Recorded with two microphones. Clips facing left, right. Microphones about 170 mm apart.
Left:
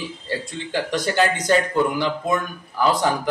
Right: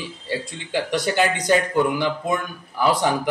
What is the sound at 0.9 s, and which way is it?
A woman's voice, 15° right (ahead or behind).